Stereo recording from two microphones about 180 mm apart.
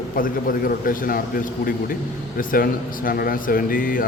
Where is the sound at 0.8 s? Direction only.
50° left (ahead or behind).